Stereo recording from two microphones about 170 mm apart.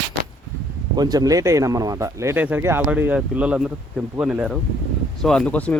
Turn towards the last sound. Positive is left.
turn(degrees=10)  # may be behind; listen again after turning